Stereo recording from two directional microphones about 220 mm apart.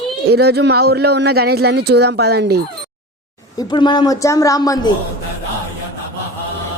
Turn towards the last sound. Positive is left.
turn(degrees=15)  # may be behind; listen again after turning